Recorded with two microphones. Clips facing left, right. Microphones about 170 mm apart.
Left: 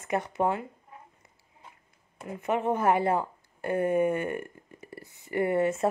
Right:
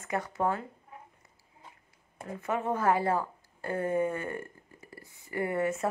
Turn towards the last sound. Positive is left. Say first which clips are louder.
# left 4 dB
turn(degrees=25)  # may be behind; listen again after turning